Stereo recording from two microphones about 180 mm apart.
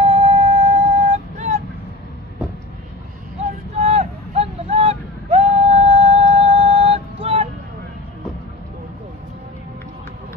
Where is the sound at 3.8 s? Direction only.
35° right (ahead or behind).